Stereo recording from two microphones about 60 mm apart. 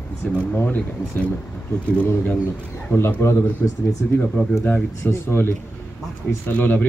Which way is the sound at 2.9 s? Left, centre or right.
Left.